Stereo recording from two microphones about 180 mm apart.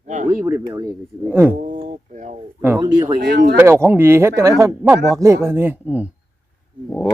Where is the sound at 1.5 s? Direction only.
45° right (ahead or behind).